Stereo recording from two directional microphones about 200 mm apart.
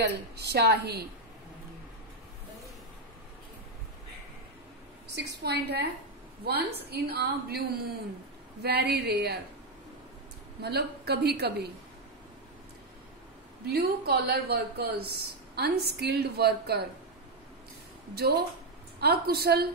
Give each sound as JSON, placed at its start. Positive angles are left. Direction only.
{"t": 0.0, "sound": "speech", "side_deg": -55}
{"t": 5.1, "sound": "a woman's voice", "side_deg": -55}
{"t": 6.9, "sound": "a woman's voice", "side_deg": -55}
{"t": 10.6, "sound": "a woman's voice", "side_deg": -55}
{"t": 13.7, "sound": "speech", "side_deg": -50}
{"t": 18.1, "sound": "speech", "side_deg": -55}